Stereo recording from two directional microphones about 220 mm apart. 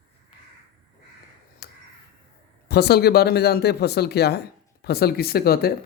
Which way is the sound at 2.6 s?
50° left (ahead or behind).